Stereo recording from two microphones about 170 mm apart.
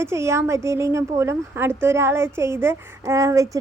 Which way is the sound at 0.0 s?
15° right (ahead or behind).